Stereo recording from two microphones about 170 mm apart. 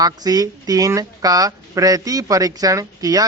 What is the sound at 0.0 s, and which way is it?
A woman's voice, 25° right (ahead or behind).